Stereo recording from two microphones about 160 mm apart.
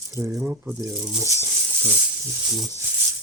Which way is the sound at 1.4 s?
10° right (ahead or behind).